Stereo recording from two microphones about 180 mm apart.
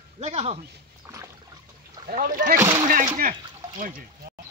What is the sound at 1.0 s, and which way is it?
Rowboat, 15° right (ahead or behind).